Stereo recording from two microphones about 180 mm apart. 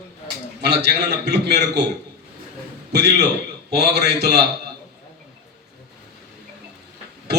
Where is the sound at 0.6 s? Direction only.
65° right (ahead or behind).